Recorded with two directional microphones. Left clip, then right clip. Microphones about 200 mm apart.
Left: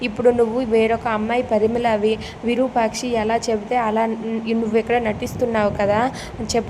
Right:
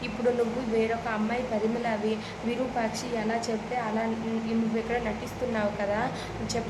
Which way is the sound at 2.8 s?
40° left (ahead or behind).